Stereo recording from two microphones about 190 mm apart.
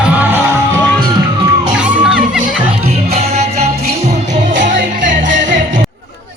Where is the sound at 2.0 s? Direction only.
5° right (ahead or behind).